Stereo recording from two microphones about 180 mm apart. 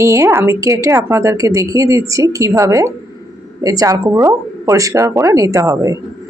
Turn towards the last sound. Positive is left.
turn(degrees=-15)  # may be behind; listen again after turning